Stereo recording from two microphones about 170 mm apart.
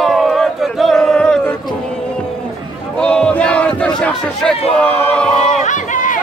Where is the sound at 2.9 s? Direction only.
5° left (ahead or behind).